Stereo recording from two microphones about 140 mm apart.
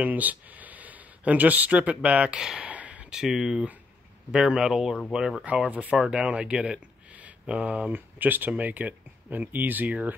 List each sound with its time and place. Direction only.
0.0 s speech: 10° right (ahead or behind)